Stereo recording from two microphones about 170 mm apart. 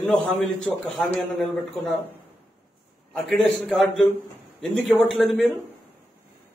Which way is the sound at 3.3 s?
Centre (ahead or behind).